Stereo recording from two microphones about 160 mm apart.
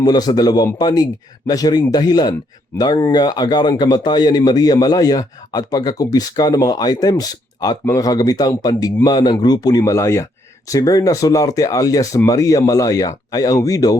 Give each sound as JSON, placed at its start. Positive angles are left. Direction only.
{"t": 0.0, "sound": "a man's voice", "side_deg": 25}